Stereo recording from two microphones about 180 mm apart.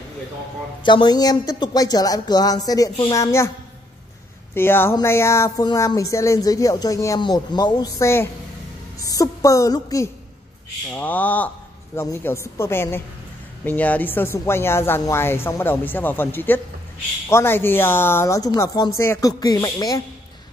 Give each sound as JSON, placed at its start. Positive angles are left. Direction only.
{"t": 0.8, "sound": "speech", "side_deg": 25}
{"t": 4.6, "sound": "speech", "side_deg": 10}